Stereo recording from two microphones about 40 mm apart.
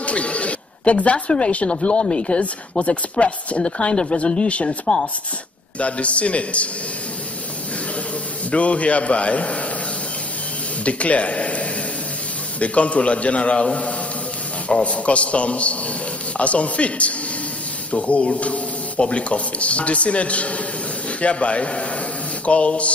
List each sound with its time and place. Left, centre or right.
0.0 s a sound: left
1.2 s speech: left
8.5 s speech: left
10.8 s speech: left